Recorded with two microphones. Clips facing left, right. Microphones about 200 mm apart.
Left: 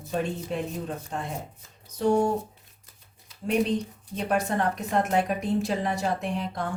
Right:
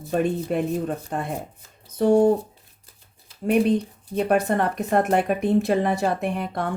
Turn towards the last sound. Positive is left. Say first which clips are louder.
# right 4 dB
turn(degrees=-60)  # may be behind; listen again after turning